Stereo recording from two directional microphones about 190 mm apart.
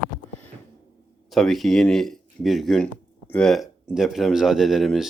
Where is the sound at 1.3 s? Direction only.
Centre (ahead or behind).